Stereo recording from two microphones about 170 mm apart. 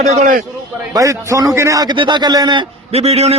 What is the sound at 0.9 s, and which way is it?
A man's voice, 20° right (ahead or behind).